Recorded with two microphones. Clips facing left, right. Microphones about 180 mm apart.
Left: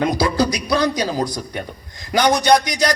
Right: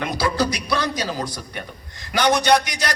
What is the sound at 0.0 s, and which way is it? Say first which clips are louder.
Speech: left 4 dB; 15° left (ahead or behind).